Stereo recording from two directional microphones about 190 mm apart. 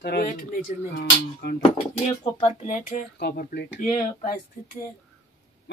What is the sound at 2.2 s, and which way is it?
Speech, 35° left (ahead or behind).